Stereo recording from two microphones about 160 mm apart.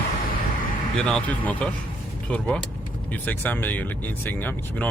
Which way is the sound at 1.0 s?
5° left (ahead or behind).